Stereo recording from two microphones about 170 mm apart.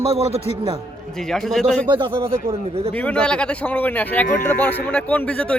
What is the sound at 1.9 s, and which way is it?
Speech, 25° right (ahead or behind).